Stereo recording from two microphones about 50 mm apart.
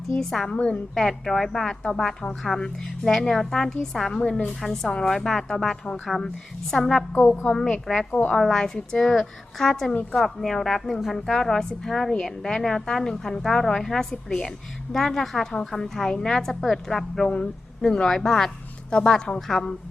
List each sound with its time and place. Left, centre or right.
0.1 s a woman's voice: centre
0.5 s a woman's voice: centre
0.9 s a woman's voice: centre
4.3 s a woman's voice: left
4.6 s a woman's voice: centre
7.1 s a woman's voice: left
7.4 s a woman's voice: centre
9.9 s a woman's voice: left
10.2 s a woman's voice: centre
18.9 s a woman's voice: centre